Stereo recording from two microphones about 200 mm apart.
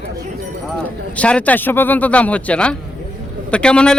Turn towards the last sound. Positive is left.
turn(degrees=5)  # may be behind; listen again after turning